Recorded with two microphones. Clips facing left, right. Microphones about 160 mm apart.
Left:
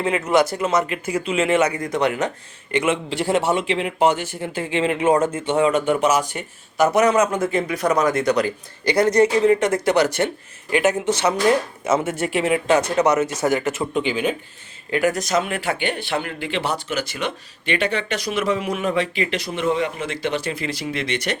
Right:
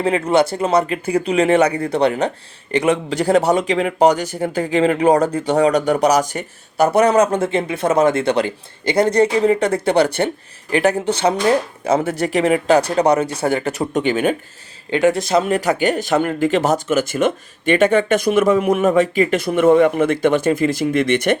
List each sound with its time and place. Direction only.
0.0 s speech: 35° right (ahead or behind); by 14.3 s 50° right (ahead or behind)
14.8 s speech: 25° right (ahead or behind); by 21.3 s 55° right (ahead or behind)